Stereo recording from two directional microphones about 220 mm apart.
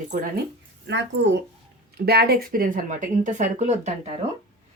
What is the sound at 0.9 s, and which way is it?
Speech, 50° right (ahead or behind).